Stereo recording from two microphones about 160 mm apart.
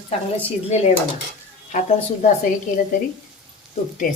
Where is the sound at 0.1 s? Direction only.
40° left (ahead or behind).